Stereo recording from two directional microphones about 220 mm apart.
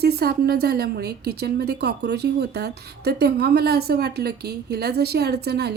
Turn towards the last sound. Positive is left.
turn(degrees=-45)  # may be behind; listen again after turning